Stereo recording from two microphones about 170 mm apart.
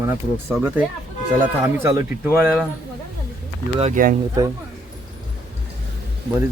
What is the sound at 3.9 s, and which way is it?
Speech, 55° right (ahead or behind).